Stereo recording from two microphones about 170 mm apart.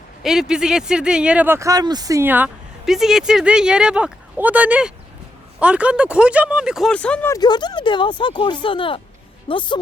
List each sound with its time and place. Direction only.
0.2 s speech: 5° right (ahead or behind)
7.3 s speech: 25° left (ahead or behind)